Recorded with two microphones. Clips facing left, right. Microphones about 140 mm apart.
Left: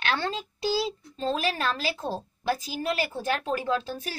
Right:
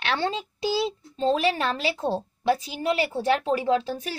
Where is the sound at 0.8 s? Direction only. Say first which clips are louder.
Right 5 dB; 25° right (ahead or behind).